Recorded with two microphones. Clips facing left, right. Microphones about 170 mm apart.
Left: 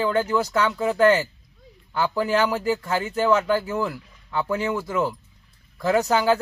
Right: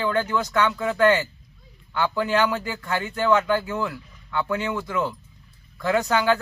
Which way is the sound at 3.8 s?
35° left (ahead or behind).